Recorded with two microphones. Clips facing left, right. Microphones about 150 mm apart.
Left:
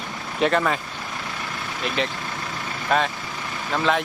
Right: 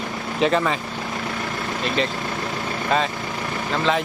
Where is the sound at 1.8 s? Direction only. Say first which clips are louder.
Right 2 dB; centre (ahead or behind).